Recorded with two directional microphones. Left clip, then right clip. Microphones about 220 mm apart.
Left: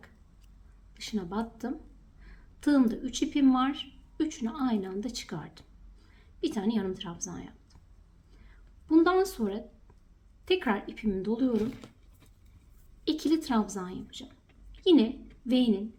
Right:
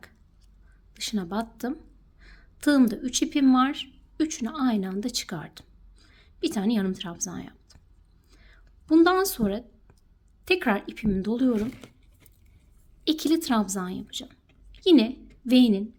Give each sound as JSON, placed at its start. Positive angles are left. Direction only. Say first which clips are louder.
{"t": 0.9, "sound": "a woman's voice", "louder": "right 4 dB", "side_deg": -45}
{"t": 8.3, "sound": "a sound", "louder": "right 6 dB", "side_deg": -45}
{"t": 10.4, "sound": "a woman's voice", "louder": "right 4 dB", "side_deg": -50}
{"t": 13.1, "sound": "a woman's voice", "louder": "right 4 dB", "side_deg": -45}